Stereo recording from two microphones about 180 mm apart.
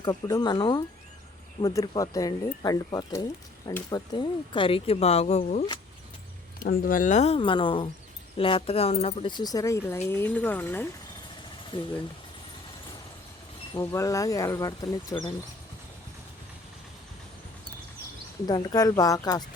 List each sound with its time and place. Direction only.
0.0 s speech: 20° left (ahead or behind); by 5.6 s 40° left (ahead or behind)
6.6 s speech: 50° left (ahead or behind); by 10.8 s 10° left (ahead or behind)
11.7 s speech: 25° left (ahead or behind)
13.7 s speech: 15° left (ahead or behind)
18.4 s speech: 20° left (ahead or behind)